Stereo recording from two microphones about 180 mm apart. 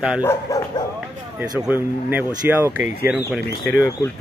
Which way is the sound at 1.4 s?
10° right (ahead or behind).